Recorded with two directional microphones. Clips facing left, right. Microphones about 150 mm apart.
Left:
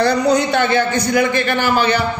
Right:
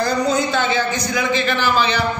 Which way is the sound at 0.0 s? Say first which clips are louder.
Left 4 dB; 70° left (ahead or behind).